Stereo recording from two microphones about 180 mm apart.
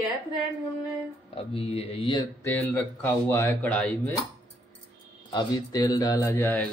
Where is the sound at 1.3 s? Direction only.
30° left (ahead or behind).